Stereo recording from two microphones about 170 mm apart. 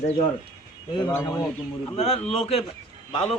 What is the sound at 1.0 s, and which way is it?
Speech, 20° left (ahead or behind).